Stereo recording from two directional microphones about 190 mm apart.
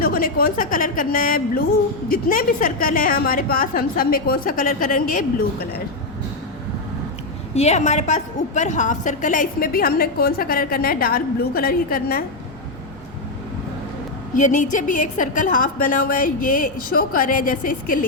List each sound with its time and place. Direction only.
0.0 s a woman's voice: 50° left (ahead or behind)
7.5 s a woman's voice: 35° left (ahead or behind); by 12.2 s 50° left (ahead or behind)
14.3 s a woman's voice: 40° left (ahead or behind)